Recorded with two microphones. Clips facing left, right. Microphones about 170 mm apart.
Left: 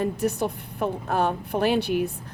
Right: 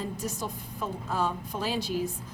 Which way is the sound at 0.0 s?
65° left (ahead or behind).